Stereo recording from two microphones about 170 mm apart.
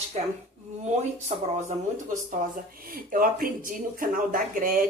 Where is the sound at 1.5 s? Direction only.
45° right (ahead or behind).